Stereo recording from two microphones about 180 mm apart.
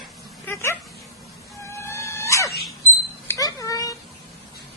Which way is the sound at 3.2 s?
20° left (ahead or behind).